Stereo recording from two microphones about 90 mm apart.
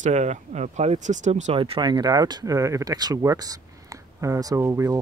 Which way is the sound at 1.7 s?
50° right (ahead or behind).